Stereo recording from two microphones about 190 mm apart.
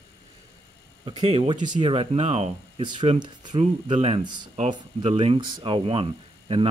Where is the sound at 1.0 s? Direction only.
25° right (ahead or behind).